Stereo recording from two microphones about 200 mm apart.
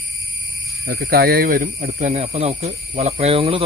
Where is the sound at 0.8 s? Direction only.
50° right (ahead or behind).